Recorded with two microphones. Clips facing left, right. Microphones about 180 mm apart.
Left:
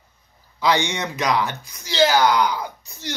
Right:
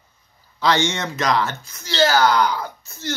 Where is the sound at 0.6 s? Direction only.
15° left (ahead or behind).